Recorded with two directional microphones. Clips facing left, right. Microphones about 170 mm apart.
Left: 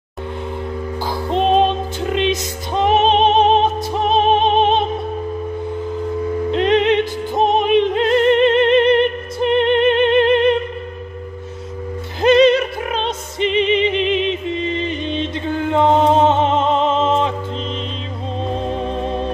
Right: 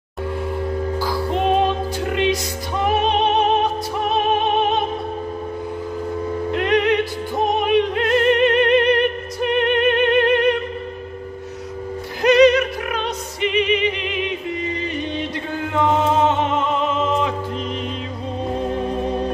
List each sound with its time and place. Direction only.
0.9 s music: 25° left (ahead or behind)
6.5 s music: 25° left (ahead or behind)
12.2 s music: 25° left (ahead or behind)
18.7 s music: 25° left (ahead or behind)